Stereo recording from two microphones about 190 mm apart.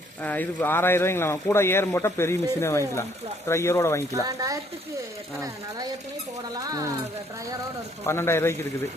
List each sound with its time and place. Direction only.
0.2 s speech: 10° left (ahead or behind)
4.1 s speech: 15° right (ahead or behind)
6.5 s speech: 20° right (ahead or behind)
8.0 s speech: 15° left (ahead or behind)